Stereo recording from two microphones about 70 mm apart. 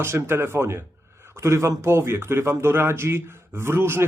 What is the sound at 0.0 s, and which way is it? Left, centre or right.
A man's voice, right.